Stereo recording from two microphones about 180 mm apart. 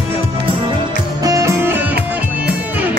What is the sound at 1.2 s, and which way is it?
Music, 15° right (ahead or behind).